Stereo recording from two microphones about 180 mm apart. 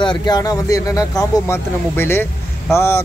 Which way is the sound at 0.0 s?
25° left (ahead or behind).